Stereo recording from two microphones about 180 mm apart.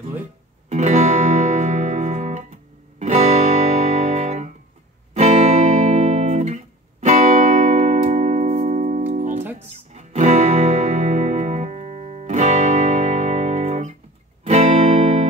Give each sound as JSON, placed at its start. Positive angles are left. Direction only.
{"t": 0.7, "sound": "music", "side_deg": -40}